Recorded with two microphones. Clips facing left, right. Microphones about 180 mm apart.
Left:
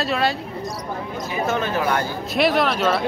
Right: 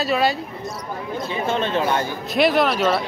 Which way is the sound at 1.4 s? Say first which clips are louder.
Even; 30° right (ahead or behind).